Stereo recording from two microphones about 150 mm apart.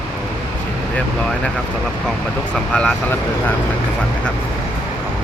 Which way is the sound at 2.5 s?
5° left (ahead or behind).